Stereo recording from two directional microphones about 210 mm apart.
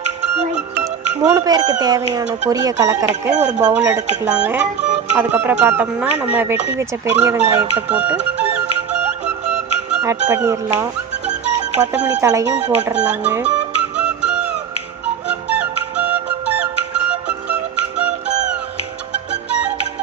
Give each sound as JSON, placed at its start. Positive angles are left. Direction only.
{"t": 1.3, "sound": "speech", "side_deg": -20}
{"t": 9.9, "sound": "music", "side_deg": -10}
{"t": 10.2, "sound": "speech", "side_deg": -15}
{"t": 13.9, "sound": "music", "side_deg": -5}
{"t": 15.4, "sound": "music", "side_deg": -5}